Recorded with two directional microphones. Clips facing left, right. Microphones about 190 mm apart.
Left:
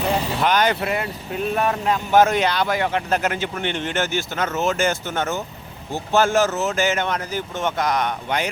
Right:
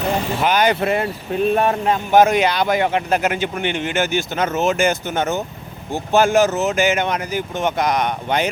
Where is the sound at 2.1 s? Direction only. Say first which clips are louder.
Right 3 dB; 15° right (ahead or behind).